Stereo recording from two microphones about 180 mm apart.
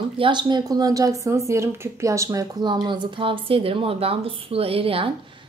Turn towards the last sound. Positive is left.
turn(degrees=-30)  # may be behind; listen again after turning